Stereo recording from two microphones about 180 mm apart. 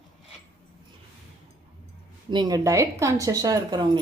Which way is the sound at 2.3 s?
20° right (ahead or behind).